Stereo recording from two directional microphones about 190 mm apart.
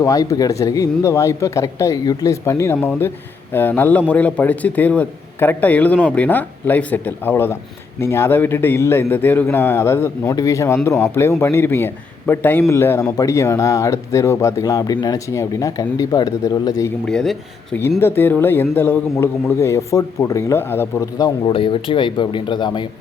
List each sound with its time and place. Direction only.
0.0 s a man's voice: 20° left (ahead or behind)
17.1 s a man's voice: 5° left (ahead or behind); by 22.9 s 25° left (ahead or behind)